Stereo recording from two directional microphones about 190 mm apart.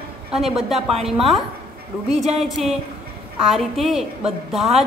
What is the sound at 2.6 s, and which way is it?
Speech, 35° right (ahead or behind).